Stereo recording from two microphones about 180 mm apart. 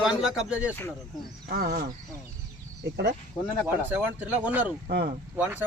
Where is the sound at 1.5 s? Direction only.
55° right (ahead or behind).